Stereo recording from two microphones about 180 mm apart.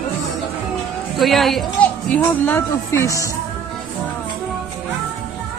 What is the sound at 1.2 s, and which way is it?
A woman's voice, centre (ahead or behind).